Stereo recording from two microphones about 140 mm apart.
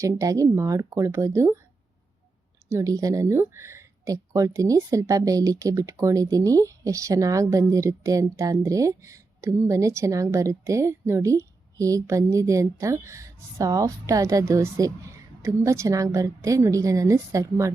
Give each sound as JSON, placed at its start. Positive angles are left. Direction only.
{"t": 0.0, "sound": "speech", "side_deg": -25}
{"t": 2.6, "sound": "speech", "side_deg": -20}